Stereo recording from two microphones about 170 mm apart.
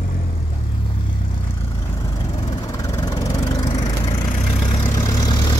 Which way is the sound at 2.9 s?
20° left (ahead or behind).